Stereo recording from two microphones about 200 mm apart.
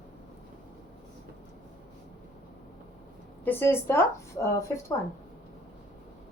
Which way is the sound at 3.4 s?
10° left (ahead or behind).